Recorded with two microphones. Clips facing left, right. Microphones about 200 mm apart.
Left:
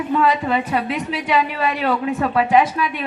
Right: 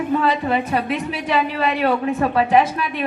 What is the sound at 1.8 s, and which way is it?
Speech, 30° right (ahead or behind).